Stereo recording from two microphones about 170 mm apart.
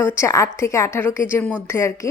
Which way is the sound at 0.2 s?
15° left (ahead or behind).